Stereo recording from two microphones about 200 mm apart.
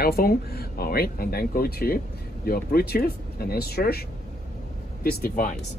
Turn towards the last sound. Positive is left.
turn(degrees=45)  # may be behind; listen again after turning